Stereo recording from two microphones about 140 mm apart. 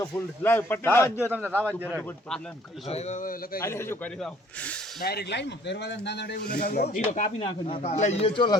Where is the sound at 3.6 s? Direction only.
20° left (ahead or behind).